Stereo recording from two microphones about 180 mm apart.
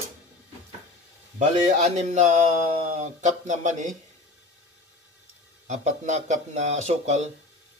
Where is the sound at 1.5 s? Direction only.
40° right (ahead or behind).